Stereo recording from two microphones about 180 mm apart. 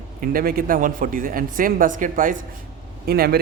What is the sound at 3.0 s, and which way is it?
Speech, 60° right (ahead or behind).